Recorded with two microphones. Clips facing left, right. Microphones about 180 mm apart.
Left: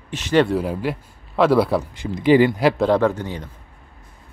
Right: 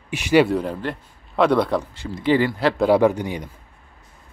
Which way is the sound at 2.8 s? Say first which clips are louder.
Right 1 dB; 10° right (ahead or behind).